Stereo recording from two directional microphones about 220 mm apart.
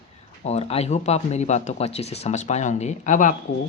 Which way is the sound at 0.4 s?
30° left (ahead or behind).